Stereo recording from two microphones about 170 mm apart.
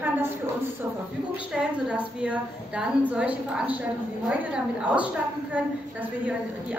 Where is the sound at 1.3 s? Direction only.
5° right (ahead or behind).